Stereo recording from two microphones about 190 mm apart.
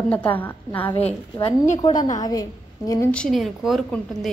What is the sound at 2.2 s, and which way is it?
Speech, 20° left (ahead or behind).